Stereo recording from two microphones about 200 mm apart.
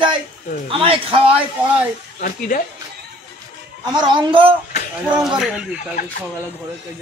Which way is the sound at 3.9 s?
20° right (ahead or behind).